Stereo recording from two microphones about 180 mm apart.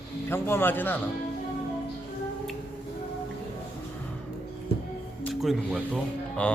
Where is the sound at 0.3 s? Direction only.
10° left (ahead or behind).